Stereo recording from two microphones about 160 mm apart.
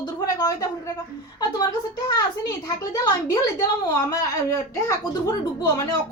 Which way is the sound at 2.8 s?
20° left (ahead or behind).